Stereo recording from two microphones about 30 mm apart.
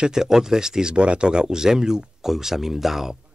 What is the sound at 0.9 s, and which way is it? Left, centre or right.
Speech, right.